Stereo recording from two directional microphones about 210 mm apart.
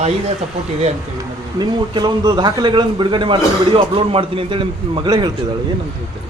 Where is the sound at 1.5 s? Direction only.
20° right (ahead or behind).